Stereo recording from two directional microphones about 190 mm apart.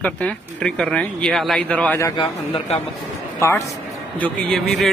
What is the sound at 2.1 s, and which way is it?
Speech, 25° left (ahead or behind).